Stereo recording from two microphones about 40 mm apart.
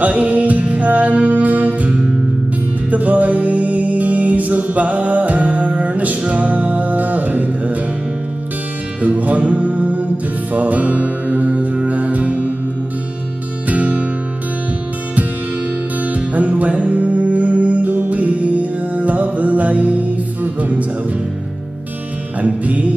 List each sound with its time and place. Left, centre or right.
0.0 s music: right
9.0 s music: right
13.7 s music: right
16.1 s music: right
22.4 s music: right